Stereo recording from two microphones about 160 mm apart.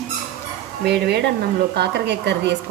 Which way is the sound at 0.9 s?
90° right.